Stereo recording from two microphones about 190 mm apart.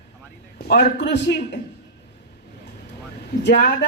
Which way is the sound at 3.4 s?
65° left (ahead or behind).